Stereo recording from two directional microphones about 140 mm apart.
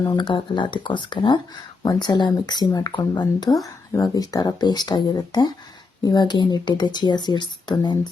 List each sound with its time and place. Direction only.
0.2 s speech: 35° left (ahead or behind)